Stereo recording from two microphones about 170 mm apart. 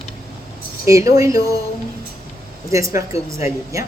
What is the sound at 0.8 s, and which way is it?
Speech, 20° right (ahead or behind).